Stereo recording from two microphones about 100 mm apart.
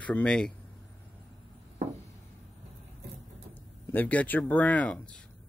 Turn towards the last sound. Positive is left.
turn(degrees=10)  # may be behind; listen again after turning